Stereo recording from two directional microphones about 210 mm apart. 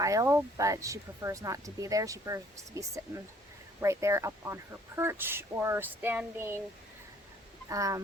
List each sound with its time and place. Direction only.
0.0 s speech: 15° right (ahead or behind)
7.7 s speech: 15° right (ahead or behind)